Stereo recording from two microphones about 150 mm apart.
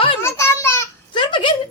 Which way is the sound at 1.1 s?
30° left (ahead or behind).